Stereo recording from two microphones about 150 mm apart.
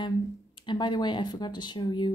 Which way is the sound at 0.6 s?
30° left (ahead or behind).